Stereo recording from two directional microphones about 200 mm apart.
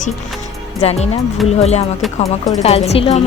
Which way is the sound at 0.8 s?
35° left (ahead or behind).